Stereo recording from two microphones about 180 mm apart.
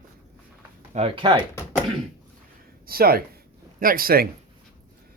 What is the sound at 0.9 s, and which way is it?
Speech, 30° right (ahead or behind).